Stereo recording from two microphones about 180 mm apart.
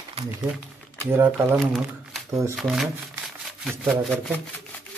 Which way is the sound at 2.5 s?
Centre (ahead or behind).